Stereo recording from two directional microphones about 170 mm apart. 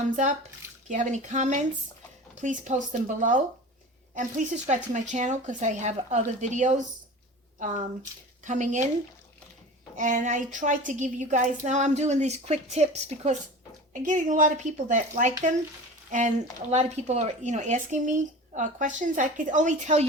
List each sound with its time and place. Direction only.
0.9 s a woman's voice: 45° right (ahead or behind)
9.9 s a woman's voice: 45° right (ahead or behind)
16.7 s a woman's voice: 40° right (ahead or behind)